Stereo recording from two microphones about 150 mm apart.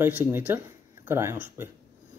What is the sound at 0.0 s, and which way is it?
Speech, 15° right (ahead or behind).